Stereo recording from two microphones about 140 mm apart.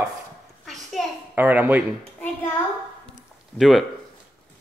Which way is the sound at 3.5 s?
Centre (ahead or behind).